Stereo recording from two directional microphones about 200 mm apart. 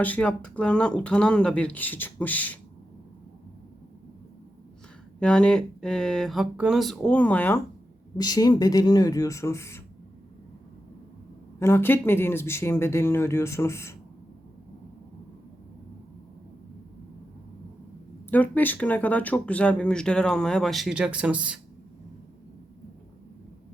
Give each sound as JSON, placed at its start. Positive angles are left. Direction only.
{"t": 0.0, "sound": "speech", "side_deg": 5}
{"t": 5.2, "sound": "speech", "side_deg": 5}
{"t": 8.2, "sound": "speech", "side_deg": 20}
{"t": 11.6, "sound": "speech", "side_deg": 10}
{"t": 18.3, "sound": "speech", "side_deg": 10}